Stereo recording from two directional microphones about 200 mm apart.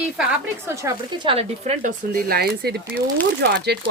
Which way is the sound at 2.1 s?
50° right (ahead or behind).